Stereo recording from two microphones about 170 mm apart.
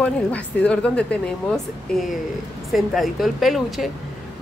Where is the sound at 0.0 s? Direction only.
5° left (ahead or behind).